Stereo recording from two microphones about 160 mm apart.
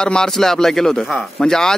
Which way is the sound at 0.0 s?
5° left (ahead or behind).